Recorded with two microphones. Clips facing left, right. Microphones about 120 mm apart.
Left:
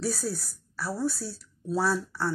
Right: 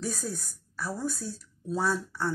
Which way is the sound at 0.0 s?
35° left (ahead or behind).